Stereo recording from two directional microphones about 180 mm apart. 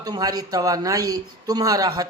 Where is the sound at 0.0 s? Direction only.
20° right (ahead or behind).